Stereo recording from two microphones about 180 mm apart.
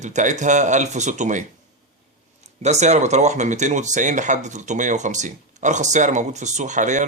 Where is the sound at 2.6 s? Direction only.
40° right (ahead or behind).